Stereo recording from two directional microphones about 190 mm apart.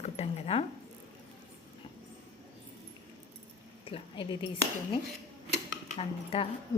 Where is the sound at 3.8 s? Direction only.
30° left (ahead or behind).